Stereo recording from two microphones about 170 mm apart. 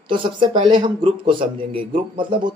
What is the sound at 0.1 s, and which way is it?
A man's voice, 30° right (ahead or behind).